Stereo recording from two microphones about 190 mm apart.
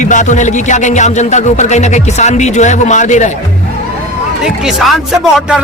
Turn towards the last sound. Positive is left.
turn(degrees=0)  # may be behind; listen again after turning